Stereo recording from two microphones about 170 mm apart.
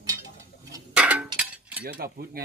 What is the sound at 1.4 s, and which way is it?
Mechanisms, 10° right (ahead or behind).